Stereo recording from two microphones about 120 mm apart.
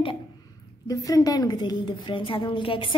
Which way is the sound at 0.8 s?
30° left (ahead or behind).